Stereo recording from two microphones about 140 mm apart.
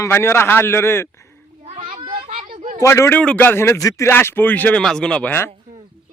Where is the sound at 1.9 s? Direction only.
40° right (ahead or behind).